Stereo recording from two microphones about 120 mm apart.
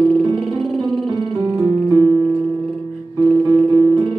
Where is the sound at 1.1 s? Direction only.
35° right (ahead or behind).